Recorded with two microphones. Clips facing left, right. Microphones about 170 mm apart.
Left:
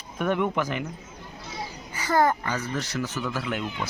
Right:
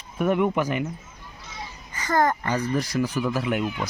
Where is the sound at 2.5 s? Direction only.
10° right (ahead or behind).